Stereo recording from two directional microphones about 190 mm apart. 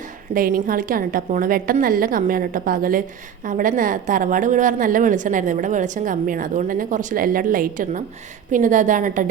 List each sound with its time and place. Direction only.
0.3 s a woman's voice: 45° right (ahead or behind)